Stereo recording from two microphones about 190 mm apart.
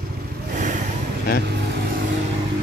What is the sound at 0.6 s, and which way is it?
Vehicle, 40° right (ahead or behind).